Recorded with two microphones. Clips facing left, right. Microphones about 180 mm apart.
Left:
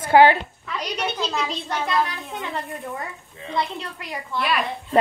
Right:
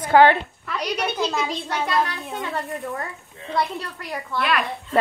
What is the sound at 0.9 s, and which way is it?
Speech, 10° right (ahead or behind).